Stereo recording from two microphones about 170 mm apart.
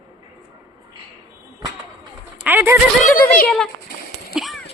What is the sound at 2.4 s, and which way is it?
Speech, 15° right (ahead or behind).